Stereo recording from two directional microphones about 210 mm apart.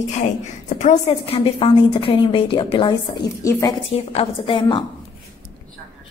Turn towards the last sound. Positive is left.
turn(degrees=25)  # may be behind; listen again after turning